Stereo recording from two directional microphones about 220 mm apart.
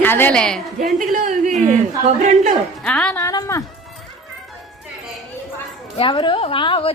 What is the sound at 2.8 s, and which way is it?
Speech, 5° left (ahead or behind).